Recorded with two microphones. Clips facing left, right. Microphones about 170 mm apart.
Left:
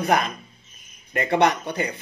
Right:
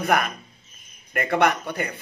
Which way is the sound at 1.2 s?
20° left (ahead or behind).